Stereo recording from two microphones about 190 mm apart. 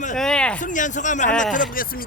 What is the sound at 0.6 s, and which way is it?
Speech, 40° left (ahead or behind).